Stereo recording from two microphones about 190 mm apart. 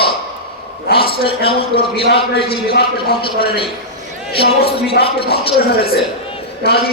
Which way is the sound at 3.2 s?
25° left (ahead or behind).